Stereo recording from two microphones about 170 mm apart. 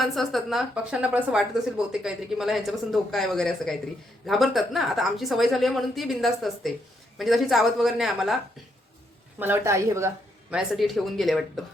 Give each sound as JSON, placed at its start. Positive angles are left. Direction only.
{"t": 0.0, "sound": "a woman's voice", "side_deg": 0}
{"t": 9.4, "sound": "speech", "side_deg": -15}
{"t": 10.5, "sound": "a woman's voice", "side_deg": 0}